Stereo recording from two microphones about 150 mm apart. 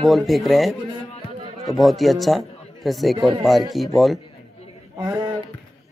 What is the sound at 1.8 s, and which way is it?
A man's voice, centre (ahead or behind).